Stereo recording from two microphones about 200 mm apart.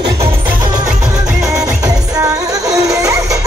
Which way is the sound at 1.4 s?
15° right (ahead or behind).